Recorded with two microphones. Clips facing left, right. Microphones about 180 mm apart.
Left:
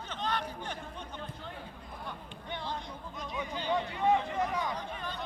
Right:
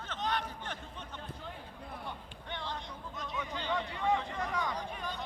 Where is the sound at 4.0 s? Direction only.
20° left (ahead or behind).